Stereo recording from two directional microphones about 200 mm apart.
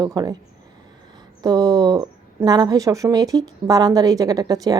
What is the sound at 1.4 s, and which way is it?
Speech, 20° right (ahead or behind).